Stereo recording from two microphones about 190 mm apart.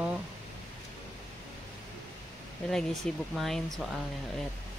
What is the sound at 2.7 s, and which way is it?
Speech, 5° left (ahead or behind).